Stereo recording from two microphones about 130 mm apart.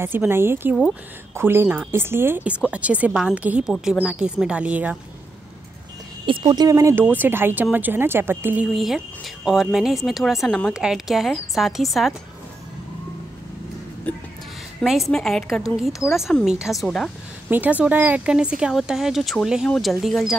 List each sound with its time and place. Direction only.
0.0 s speech: 15° right (ahead or behind)
6.2 s speech: 35° right (ahead or behind); by 8.6 s 15° right (ahead or behind)
8.7 s speech: centre (ahead or behind)
14.1 s speech: 10° left (ahead or behind)
14.8 s speech: centre (ahead or behind)
17.5 s speech: 10° right (ahead or behind)